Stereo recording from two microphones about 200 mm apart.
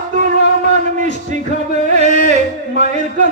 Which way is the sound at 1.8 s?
35° right (ahead or behind).